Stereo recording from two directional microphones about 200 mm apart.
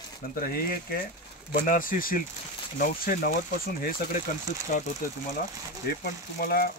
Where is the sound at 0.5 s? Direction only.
50° left (ahead or behind).